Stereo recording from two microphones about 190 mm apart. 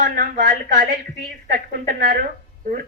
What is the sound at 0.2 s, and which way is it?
A woman's voice, 45° right (ahead or behind).